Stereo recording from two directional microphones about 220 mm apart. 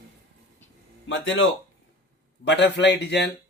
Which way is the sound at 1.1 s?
60° left (ahead or behind).